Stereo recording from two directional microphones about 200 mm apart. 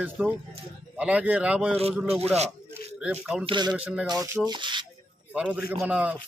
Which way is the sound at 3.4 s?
25° right (ahead or behind).